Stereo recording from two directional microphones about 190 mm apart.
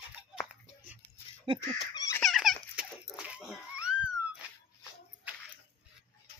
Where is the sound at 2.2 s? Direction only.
Centre (ahead or behind).